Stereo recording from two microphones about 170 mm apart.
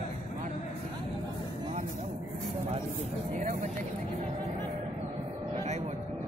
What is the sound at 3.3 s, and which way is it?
Speech, 50° right (ahead or behind).